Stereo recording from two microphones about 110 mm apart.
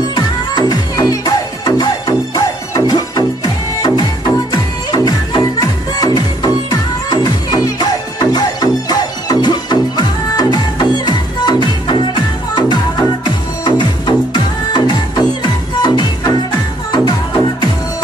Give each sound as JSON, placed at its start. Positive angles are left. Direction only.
{"t": 0.1, "sound": "music", "side_deg": 40}